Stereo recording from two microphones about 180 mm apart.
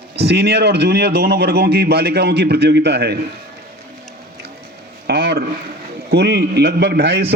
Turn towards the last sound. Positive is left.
turn(degrees=-70)  # may be behind; listen again after turning